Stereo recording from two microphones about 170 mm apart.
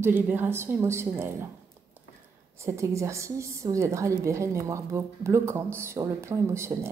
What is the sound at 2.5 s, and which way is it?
A woman's voice, 15° right (ahead or behind).